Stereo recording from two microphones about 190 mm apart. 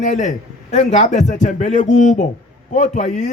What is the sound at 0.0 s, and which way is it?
A man's voice, 40° left (ahead or behind).